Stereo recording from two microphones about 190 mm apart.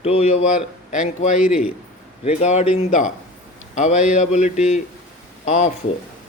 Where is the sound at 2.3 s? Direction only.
35° left (ahead or behind).